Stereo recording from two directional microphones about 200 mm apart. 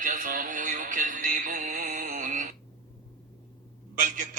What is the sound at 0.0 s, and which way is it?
Music, 40° right (ahead or behind).